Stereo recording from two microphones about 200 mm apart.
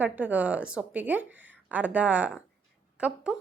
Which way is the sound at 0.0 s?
10° right (ahead or behind).